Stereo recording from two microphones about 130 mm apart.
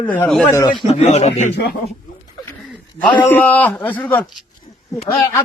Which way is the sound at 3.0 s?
15° left (ahead or behind).